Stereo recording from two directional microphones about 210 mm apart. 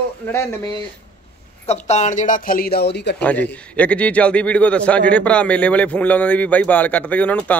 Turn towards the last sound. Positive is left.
turn(degrees=5)  # may be behind; listen again after turning